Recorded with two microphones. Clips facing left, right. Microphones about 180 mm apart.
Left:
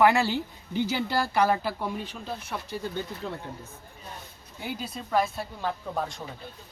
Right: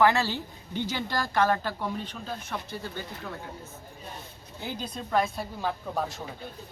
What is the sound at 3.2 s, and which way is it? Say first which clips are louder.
Speech: left 3 dB; 25° left (ahead or behind).